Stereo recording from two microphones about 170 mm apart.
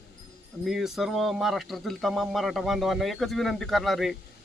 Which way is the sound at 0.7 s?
Centre (ahead or behind).